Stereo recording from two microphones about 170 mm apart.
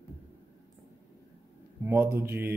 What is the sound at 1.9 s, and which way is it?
Mantra, 15° right (ahead or behind).